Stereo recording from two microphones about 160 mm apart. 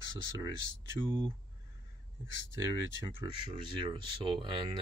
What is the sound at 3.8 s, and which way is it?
Speech, 30° right (ahead or behind).